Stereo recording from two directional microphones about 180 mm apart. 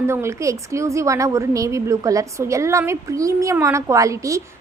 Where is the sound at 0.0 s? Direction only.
15° right (ahead or behind).